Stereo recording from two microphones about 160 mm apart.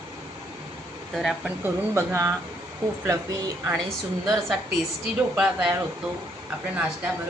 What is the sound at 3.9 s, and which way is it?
A woman's voice, centre (ahead or behind).